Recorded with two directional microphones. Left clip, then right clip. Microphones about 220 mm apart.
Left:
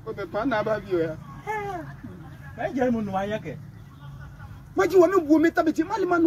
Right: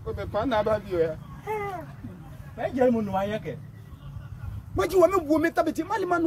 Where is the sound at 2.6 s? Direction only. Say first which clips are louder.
Right 2 dB; centre (ahead or behind).